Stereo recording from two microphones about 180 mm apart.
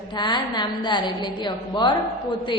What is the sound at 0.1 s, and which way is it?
A woman's voice, 25° left (ahead or behind).